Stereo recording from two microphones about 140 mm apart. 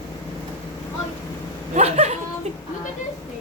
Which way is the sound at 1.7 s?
50° right (ahead or behind).